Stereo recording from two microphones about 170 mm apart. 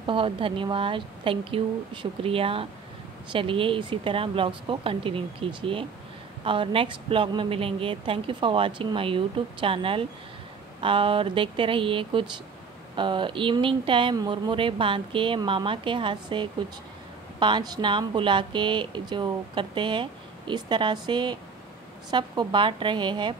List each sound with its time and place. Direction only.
0.0 s speech: 30° right (ahead or behind)